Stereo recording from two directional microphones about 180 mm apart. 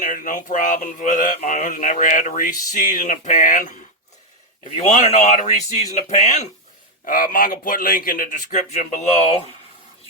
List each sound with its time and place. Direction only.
0.0 s speech: 45° left (ahead or behind)
7.0 s speech: 50° left (ahead or behind)